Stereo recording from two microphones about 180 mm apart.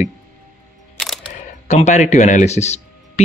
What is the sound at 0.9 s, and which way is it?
Music, centre (ahead or behind).